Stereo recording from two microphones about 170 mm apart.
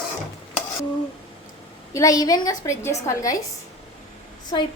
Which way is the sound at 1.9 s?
20° left (ahead or behind).